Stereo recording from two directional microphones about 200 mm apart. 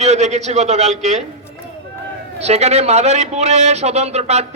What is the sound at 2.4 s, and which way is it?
A man's voice, 35° right (ahead or behind).